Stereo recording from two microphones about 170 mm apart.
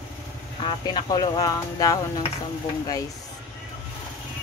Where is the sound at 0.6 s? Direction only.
25° left (ahead or behind).